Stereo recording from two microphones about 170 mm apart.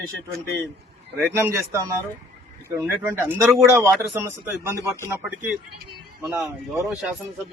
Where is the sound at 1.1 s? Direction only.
15° right (ahead or behind).